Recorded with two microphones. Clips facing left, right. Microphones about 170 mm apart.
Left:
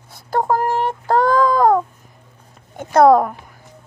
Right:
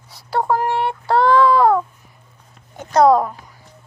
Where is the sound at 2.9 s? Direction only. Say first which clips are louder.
Left 2 dB; 55° left (ahead or behind).